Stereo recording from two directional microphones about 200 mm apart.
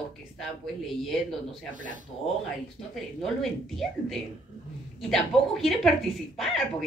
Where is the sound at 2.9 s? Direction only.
Centre (ahead or behind).